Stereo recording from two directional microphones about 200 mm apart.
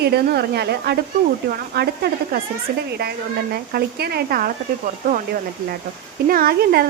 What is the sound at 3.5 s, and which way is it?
Speech, 50° right (ahead or behind).